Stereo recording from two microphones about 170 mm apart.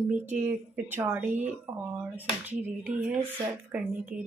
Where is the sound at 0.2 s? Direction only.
10° right (ahead or behind).